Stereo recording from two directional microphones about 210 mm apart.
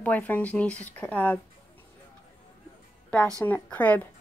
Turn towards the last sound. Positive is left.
turn(degrees=5)  # may be behind; listen again after turning